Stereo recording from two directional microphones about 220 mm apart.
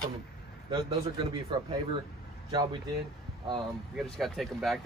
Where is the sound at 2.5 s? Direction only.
20° right (ahead or behind).